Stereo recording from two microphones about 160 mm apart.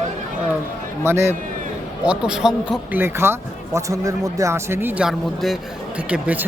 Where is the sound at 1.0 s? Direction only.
15° right (ahead or behind).